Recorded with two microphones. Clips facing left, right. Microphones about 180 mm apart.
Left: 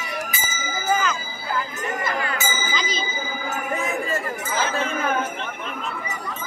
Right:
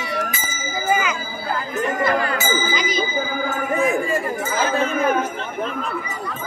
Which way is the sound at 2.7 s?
10° right (ahead or behind).